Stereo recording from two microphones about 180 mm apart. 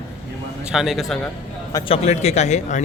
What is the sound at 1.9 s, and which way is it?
Speech, 40° left (ahead or behind).